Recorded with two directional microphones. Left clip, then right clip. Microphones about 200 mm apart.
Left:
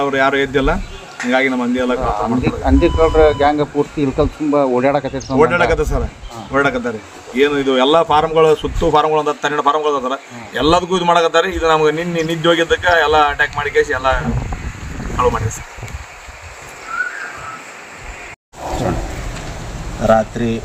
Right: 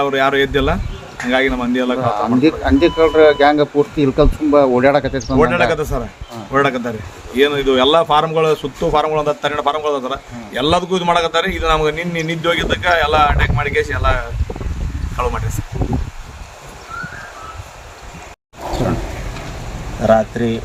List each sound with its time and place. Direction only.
0.0 s speech: 25° right (ahead or behind)
2.4 s speech: 55° right (ahead or behind)
5.4 s speech: 25° right (ahead or behind)
20.0 s speech: 5° right (ahead or behind)